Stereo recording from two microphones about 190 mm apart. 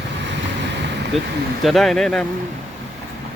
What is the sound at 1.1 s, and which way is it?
Speech, centre (ahead or behind).